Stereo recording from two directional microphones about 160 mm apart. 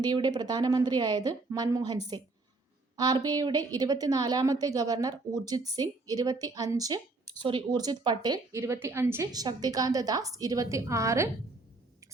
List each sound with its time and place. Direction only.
0.0 s a woman's voice: 25° right (ahead or behind)